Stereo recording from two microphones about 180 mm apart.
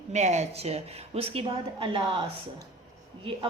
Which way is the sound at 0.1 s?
40° right (ahead or behind).